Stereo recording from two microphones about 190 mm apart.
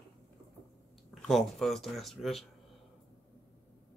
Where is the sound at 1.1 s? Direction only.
Centre (ahead or behind).